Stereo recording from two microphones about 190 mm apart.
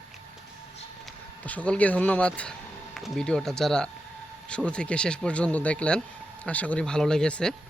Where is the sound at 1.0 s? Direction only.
5° left (ahead or behind).